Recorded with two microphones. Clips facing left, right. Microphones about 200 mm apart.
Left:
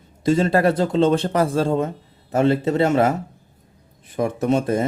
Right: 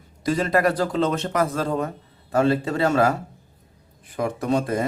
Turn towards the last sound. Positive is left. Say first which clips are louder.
# left 3 dB
turn(degrees=25)  # may be behind; listen again after turning